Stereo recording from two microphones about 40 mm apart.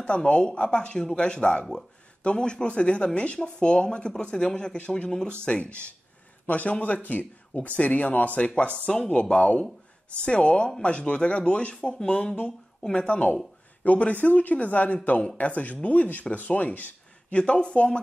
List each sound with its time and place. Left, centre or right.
0.0 s speech: left
17.4 s speech: left